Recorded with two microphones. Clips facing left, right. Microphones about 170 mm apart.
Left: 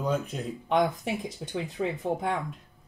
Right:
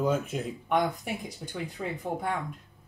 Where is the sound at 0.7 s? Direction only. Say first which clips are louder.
Left 2 dB; 20° left (ahead or behind).